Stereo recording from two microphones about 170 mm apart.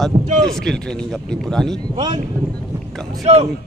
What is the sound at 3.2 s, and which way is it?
Speech, 35° right (ahead or behind).